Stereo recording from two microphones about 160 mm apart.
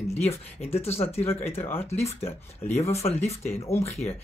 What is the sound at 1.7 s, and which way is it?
Speech, 40° left (ahead or behind).